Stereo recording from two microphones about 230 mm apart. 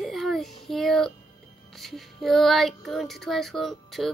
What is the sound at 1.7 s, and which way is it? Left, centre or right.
Child singing, centre.